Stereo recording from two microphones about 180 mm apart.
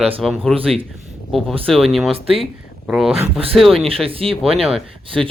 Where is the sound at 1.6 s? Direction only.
Centre (ahead or behind).